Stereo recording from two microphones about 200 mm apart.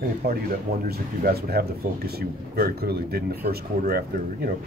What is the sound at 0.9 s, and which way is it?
Speech, 50° right (ahead or behind).